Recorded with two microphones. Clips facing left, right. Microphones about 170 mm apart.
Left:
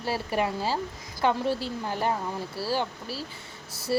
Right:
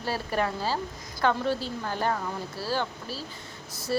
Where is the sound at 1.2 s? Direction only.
15° left (ahead or behind).